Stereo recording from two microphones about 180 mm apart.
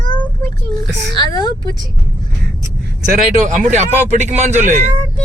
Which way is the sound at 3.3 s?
45° right (ahead or behind).